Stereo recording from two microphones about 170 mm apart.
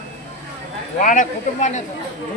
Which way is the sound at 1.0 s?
50° left (ahead or behind).